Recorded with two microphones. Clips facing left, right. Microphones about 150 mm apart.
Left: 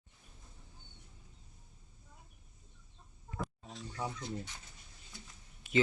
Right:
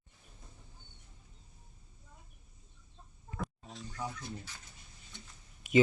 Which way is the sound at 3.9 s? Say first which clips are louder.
Left 1 dB; 25° left (ahead or behind).